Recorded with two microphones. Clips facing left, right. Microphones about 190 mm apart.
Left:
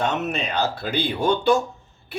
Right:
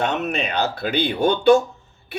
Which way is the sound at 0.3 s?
60° right (ahead or behind).